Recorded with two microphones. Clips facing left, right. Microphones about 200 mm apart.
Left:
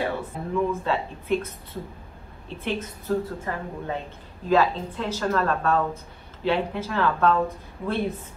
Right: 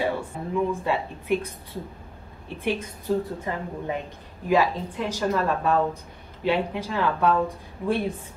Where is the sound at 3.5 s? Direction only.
15° right (ahead or behind).